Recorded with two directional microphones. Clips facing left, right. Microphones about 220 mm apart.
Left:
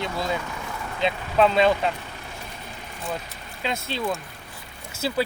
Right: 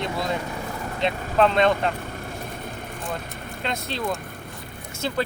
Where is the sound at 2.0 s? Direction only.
50° right (ahead or behind).